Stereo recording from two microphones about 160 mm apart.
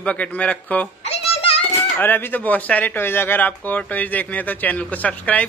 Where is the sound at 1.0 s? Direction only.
40° left (ahead or behind).